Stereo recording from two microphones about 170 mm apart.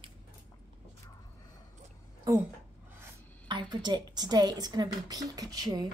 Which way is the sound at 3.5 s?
25° right (ahead or behind).